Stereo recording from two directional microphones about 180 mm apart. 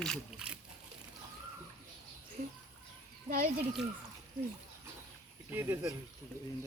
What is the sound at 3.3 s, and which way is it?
Speech, 45° right (ahead or behind).